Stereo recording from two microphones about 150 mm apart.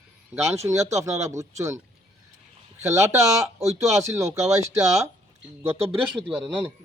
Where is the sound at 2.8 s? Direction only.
20° right (ahead or behind).